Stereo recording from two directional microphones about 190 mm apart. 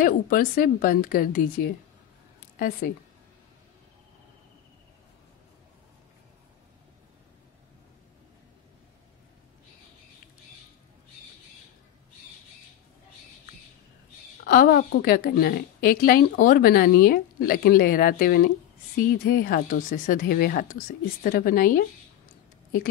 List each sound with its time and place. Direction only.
0.0 s a woman's voice: 45° left (ahead or behind)
2.8 s a woman's voice: 45° left (ahead or behind)
14.4 s a woman's voice: 50° left (ahead or behind)